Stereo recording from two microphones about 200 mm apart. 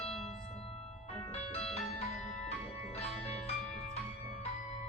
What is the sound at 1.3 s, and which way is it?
Music, 30° left (ahead or behind).